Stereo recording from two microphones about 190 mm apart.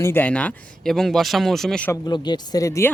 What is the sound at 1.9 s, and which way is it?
Speech, 20° left (ahead or behind).